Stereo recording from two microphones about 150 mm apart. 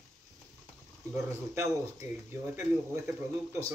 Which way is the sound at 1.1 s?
20° right (ahead or behind).